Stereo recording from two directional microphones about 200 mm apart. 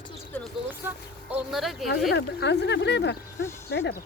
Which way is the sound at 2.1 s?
60° left (ahead or behind).